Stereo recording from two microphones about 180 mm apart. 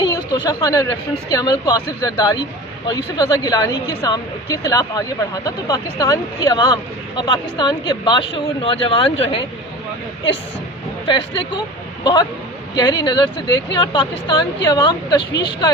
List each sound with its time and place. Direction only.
0.0 s a sound: 20° left (ahead or behind)
1.4 s speech: 20° left (ahead or behind)
11.0 s speech: 25° left (ahead or behind)
12.7 s speech: 25° left (ahead or behind)
15.2 s speech: 65° left (ahead or behind)